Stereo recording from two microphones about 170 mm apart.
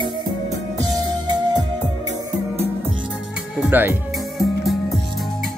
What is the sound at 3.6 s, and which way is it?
Speech, 10° right (ahead or behind).